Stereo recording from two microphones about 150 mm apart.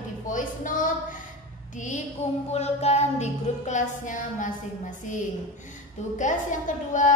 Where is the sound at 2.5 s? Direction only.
45° left (ahead or behind).